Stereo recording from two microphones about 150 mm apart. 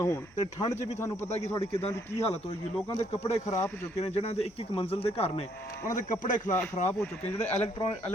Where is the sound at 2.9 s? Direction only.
45° left (ahead or behind).